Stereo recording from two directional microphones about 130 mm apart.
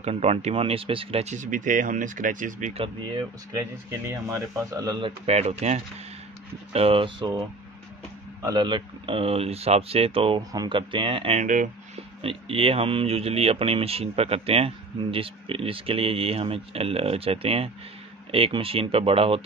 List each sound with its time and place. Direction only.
0.0 s speech: 55° right (ahead or behind)
1.3 s speech: 80° right
2.8 s speech: 35° right (ahead or behind)
3.9 s speech: 20° right (ahead or behind)
5.0 s speech: 50° right (ahead or behind)
10.5 s speech: 35° right (ahead or behind)
11.4 s speech: 90° right
12.2 s speech: 45° right (ahead or behind)